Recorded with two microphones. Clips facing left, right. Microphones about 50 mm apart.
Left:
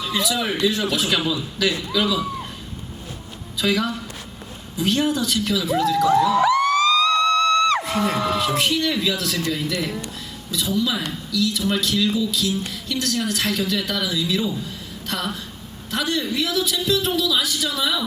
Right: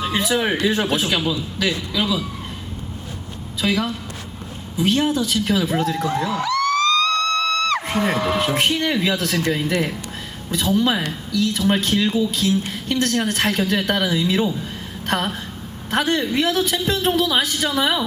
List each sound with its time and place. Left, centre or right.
0.0 s speech: right
1.2 s a man's voice: centre
3.6 s speech: right
5.5 s speech: right
6.4 s music: centre
7.9 s speech: right